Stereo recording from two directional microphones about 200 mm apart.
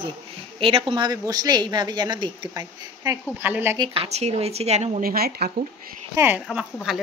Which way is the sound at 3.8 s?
30° right (ahead or behind).